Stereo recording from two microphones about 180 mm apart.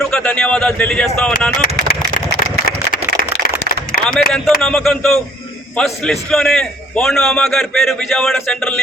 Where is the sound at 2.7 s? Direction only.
55° left (ahead or behind).